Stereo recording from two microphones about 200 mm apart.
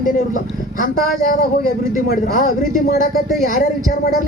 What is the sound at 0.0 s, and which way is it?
Speech, 40° left (ahead or behind).